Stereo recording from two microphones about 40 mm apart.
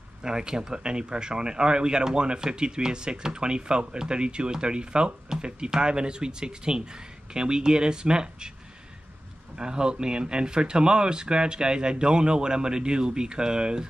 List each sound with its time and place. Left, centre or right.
0.2 s speech: centre
9.6 s speech: right